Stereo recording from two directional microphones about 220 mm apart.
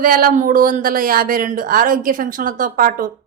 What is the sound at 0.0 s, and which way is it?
A woman's voice, 40° right (ahead or behind).